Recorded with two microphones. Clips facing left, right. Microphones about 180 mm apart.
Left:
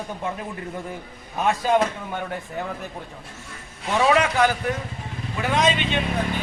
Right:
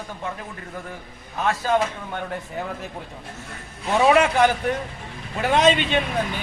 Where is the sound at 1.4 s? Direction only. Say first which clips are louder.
Left 2 dB; 15° left (ahead or behind).